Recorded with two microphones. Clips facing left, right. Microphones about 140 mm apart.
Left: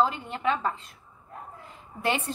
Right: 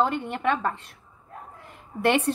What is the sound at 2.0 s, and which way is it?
Speech, 65° right (ahead or behind).